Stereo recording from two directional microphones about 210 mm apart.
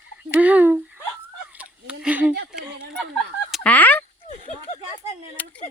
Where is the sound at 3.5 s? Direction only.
5° left (ahead or behind).